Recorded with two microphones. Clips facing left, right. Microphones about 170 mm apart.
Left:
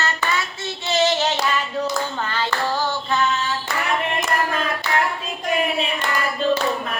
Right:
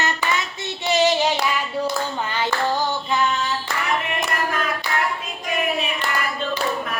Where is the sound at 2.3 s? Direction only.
15° right (ahead or behind).